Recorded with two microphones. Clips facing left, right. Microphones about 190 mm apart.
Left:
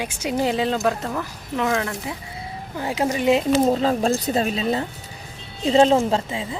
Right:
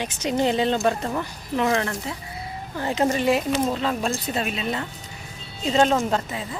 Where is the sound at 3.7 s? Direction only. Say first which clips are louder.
Left 5 dB; 40° left (ahead or behind).